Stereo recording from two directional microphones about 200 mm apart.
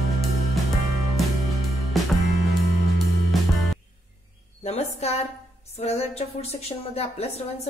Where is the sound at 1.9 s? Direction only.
Centre (ahead or behind).